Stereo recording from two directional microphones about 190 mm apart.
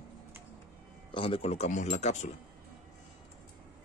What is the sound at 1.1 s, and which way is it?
Speech, 30° left (ahead or behind).